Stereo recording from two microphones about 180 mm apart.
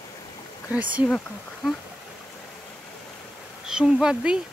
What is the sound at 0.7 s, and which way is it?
Speech, 10° right (ahead or behind).